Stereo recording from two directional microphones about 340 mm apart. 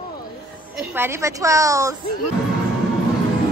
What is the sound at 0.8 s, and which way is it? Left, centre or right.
A woman's voice, centre.